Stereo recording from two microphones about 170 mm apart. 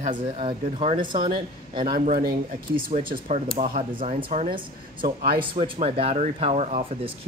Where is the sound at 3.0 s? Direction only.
40° right (ahead or behind).